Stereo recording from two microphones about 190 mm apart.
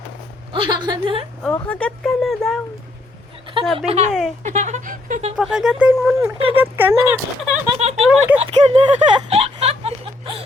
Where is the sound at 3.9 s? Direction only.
35° right (ahead or behind).